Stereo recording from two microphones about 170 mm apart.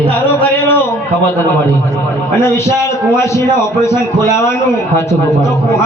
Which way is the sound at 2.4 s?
15° left (ahead or behind).